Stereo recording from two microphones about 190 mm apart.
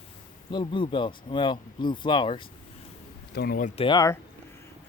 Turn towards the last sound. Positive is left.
turn(degrees=20)  # may be behind; listen again after turning